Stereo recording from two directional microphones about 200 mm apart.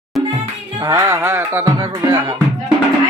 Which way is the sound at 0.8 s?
20° right (ahead or behind).